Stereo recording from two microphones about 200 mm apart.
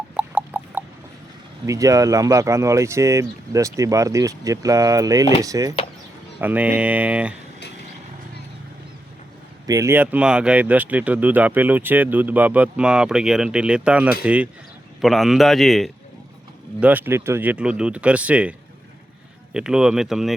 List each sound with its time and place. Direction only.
0.1 s a sound: 5° right (ahead or behind)
1.6 s speech: 15° right (ahead or behind)
9.6 s a man's voice: 15° right (ahead or behind)
19.5 s a man's voice: 5° right (ahead or behind)